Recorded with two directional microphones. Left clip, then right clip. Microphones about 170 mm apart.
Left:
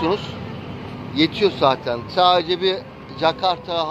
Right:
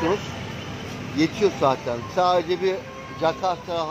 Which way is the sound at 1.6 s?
15° right (ahead or behind).